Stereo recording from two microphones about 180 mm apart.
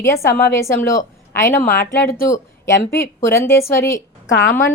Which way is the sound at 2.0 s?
55° left (ahead or behind).